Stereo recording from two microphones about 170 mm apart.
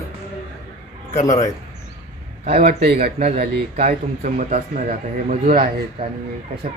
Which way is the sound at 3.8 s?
55° right (ahead or behind).